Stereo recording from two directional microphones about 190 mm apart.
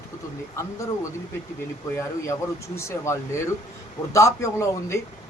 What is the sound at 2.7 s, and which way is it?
Speech, 15° left (ahead or behind).